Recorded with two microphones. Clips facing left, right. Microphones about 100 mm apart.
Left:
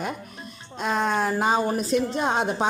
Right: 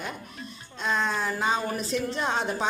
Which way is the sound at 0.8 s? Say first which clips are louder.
Left 4 dB; 45° left (ahead or behind).